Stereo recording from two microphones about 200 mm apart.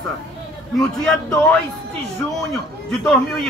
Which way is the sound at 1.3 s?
5° left (ahead or behind).